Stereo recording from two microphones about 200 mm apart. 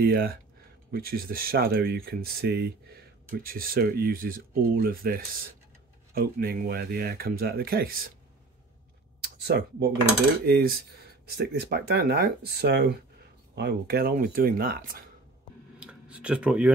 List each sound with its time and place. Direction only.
0.0 s speech: 50° right (ahead or behind)
9.2 s speech: 55° right (ahead or behind)
15.8 s a sound: 5° right (ahead or behind)